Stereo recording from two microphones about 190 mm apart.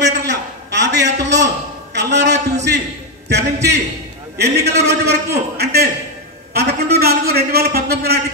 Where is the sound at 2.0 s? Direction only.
65° right (ahead or behind).